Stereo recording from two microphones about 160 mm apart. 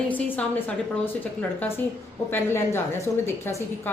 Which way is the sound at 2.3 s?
15° left (ahead or behind).